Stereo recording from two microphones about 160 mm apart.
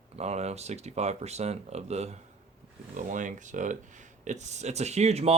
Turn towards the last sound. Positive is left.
turn(degrees=-40)  # may be behind; listen again after turning